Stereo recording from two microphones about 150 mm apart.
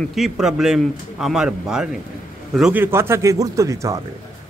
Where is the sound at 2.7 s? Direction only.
15° right (ahead or behind).